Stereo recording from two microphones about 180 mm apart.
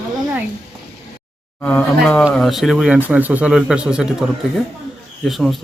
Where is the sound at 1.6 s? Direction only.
5° left (ahead or behind).